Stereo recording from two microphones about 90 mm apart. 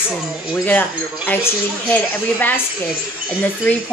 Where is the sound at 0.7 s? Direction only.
20° left (ahead or behind).